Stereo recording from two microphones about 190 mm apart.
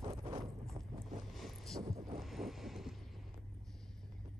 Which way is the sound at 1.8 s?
20° right (ahead or behind).